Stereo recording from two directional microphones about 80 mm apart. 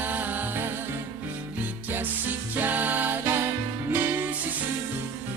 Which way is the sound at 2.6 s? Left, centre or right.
Right.